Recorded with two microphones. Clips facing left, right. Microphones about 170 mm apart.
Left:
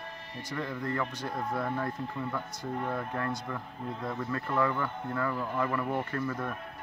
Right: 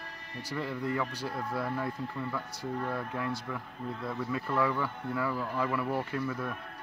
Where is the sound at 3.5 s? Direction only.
5° right (ahead or behind).